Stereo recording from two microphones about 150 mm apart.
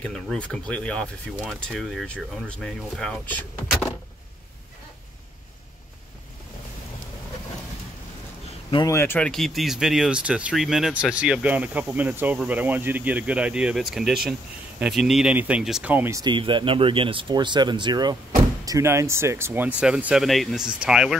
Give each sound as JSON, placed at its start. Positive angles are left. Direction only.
{"t": 0.0, "sound": "speech", "side_deg": 5}
{"t": 8.8, "sound": "speech", "side_deg": 15}
{"t": 9.3, "sound": "speech", "side_deg": 0}
{"t": 16.3, "sound": "speech", "side_deg": -30}
{"t": 18.7, "sound": "speech", "side_deg": -20}